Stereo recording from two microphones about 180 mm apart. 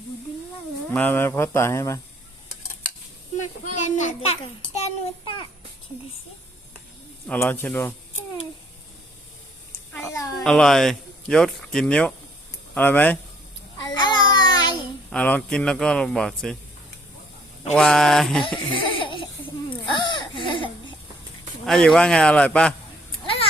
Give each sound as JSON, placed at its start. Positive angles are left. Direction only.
{"t": 0.9, "sound": "speech", "side_deg": 10}
{"t": 3.6, "sound": "a child's voice", "side_deg": 40}
{"t": 4.8, "sound": "a child's voice", "side_deg": 25}
{"t": 7.3, "sound": "speech", "side_deg": 10}
{"t": 9.9, "sound": "a sound", "side_deg": 15}
{"t": 10.4, "sound": "speech", "side_deg": 0}
{"t": 13.8, "sound": "child singing", "side_deg": 25}
{"t": 15.1, "sound": "speech", "side_deg": 5}
{"t": 17.7, "sound": "speech", "side_deg": 5}
{"t": 18.4, "sound": "laughter", "side_deg": 25}
{"t": 19.9, "sound": "a sound", "side_deg": 25}
{"t": 21.6, "sound": "speech", "side_deg": 0}